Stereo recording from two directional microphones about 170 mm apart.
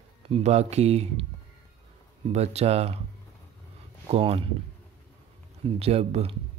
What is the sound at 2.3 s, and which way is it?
Speech, 40° right (ahead or behind).